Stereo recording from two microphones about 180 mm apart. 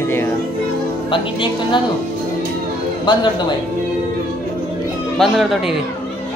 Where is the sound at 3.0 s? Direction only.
25° left (ahead or behind).